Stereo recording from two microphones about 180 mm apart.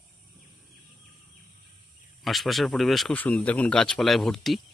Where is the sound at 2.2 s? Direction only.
Centre (ahead or behind).